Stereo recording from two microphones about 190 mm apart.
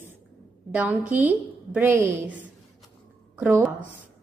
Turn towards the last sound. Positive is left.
turn(degrees=-10)  # may be behind; listen again after turning